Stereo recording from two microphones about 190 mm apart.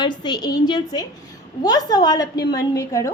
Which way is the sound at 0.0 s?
25° left (ahead or behind).